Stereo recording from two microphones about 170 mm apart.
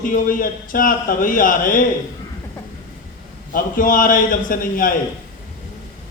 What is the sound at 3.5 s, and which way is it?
Speech, 55° left (ahead or behind).